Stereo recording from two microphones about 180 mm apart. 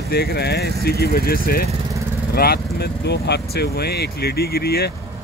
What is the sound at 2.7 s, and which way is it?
Speech, 65° left (ahead or behind).